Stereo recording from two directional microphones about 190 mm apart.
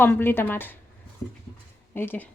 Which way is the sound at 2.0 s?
10° left (ahead or behind).